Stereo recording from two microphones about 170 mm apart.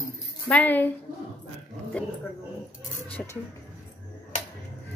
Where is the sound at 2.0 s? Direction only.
10° left (ahead or behind).